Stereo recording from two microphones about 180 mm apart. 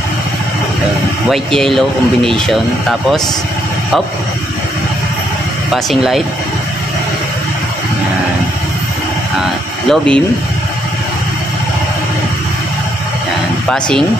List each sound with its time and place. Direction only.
1.3 s speech: centre (ahead or behind)
5.7 s speech: centre (ahead or behind)
9.4 s a sound: 5° left (ahead or behind)
13.7 s speech: 5° left (ahead or behind)